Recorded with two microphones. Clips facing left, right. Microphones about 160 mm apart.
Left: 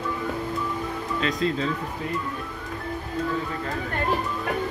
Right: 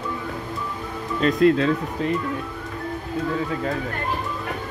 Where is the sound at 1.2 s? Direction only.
60° right (ahead or behind).